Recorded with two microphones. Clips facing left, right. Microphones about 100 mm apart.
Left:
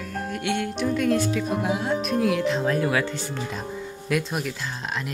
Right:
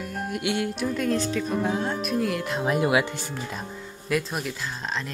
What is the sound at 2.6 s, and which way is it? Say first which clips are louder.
Speech: right 1 dB; 15° right (ahead or behind).